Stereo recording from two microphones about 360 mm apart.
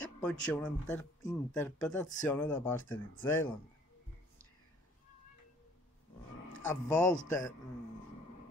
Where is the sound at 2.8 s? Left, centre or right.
Left.